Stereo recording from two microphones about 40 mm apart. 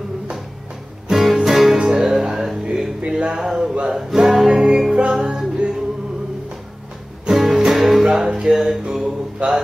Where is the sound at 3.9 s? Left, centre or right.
Centre; by 5.2 s right.